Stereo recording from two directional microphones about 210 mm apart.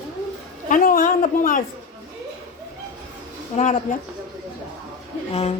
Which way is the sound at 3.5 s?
35° left (ahead or behind).